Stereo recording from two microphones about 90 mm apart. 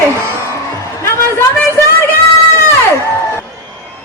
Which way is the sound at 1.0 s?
30° left (ahead or behind).